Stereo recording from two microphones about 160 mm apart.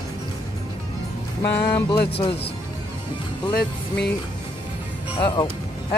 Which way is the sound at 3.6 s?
90° left.